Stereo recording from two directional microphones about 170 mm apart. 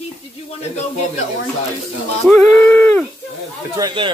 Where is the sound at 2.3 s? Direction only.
10° left (ahead or behind).